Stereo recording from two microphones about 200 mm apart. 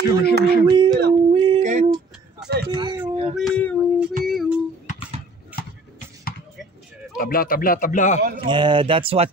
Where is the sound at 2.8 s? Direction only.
25° right (ahead or behind).